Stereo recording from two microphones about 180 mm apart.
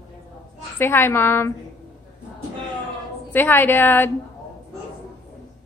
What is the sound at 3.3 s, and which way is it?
Speech, 10° left (ahead or behind).